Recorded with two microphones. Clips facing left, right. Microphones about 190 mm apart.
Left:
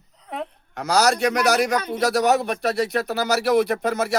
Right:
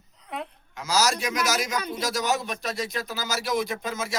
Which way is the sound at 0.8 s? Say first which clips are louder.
Left 6 dB; 60° left (ahead or behind).